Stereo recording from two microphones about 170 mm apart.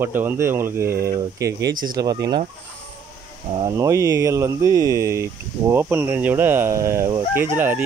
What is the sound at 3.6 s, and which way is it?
Speech, 20° right (ahead or behind).